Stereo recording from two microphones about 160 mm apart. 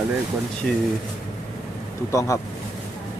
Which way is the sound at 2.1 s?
20° left (ahead or behind).